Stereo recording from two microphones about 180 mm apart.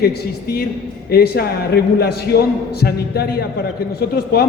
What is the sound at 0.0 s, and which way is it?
A man's voice, 60° left (ahead or behind).